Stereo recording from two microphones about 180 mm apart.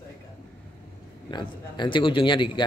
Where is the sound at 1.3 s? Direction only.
25° left (ahead or behind).